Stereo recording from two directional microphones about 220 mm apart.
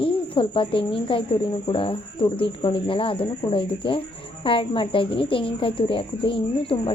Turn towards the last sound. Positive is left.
turn(degrees=25)  # may be behind; listen again after turning